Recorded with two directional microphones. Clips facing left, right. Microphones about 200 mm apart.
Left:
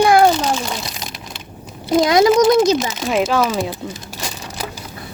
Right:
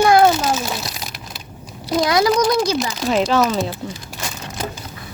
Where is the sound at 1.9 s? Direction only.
25° left (ahead or behind).